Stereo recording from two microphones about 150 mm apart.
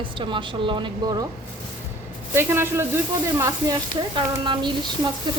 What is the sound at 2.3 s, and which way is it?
A man's voice, 15° right (ahead or behind).